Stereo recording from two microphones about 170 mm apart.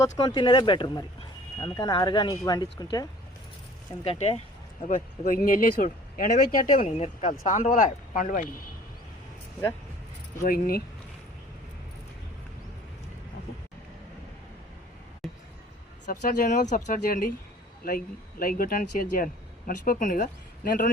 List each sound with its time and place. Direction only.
0.0 s speech: 25° left (ahead or behind)
4.0 s speech: 40° left (ahead or behind)
10.4 s speech: 60° left (ahead or behind)
15.2 s a sound: centre (ahead or behind)
16.0 s speech: 50° left (ahead or behind)